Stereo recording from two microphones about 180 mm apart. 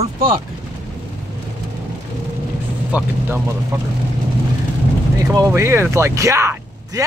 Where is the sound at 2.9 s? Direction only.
5° right (ahead or behind).